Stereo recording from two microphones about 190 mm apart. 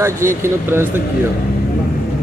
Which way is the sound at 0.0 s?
15° right (ahead or behind).